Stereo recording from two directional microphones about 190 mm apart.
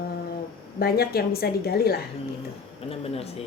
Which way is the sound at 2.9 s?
30° left (ahead or behind).